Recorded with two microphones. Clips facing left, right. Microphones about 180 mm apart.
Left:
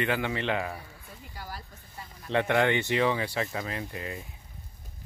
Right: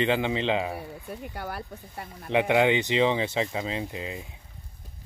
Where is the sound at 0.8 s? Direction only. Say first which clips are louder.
Right 11 dB; 65° right (ahead or behind).